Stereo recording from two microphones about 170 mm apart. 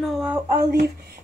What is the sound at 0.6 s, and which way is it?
Speech, 70° right (ahead or behind).